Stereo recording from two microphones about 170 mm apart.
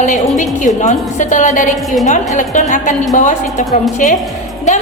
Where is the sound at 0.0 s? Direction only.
45° left (ahead or behind).